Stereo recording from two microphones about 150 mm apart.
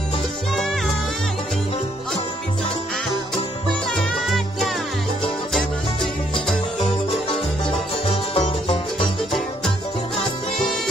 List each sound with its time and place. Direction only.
3.9 s music: centre (ahead or behind)
8.1 s music: 35° left (ahead or behind)